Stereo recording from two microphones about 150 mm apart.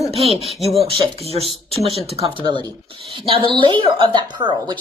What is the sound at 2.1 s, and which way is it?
Speech, 40° right (ahead or behind).